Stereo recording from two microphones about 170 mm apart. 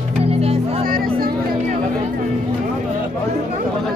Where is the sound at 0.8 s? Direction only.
60° right (ahead or behind).